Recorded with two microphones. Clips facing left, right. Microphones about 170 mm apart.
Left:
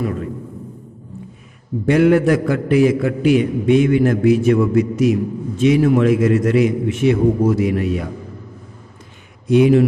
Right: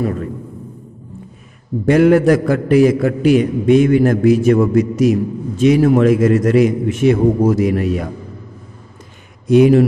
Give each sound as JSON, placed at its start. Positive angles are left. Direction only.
{"t": 0.0, "sound": "a man's voice", "side_deg": -45}
{"t": 1.9, "sound": "a man's voice", "side_deg": -45}
{"t": 9.5, "sound": "a man's voice", "side_deg": -45}